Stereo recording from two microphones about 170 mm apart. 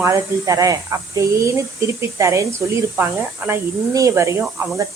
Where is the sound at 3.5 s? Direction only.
20° right (ahead or behind).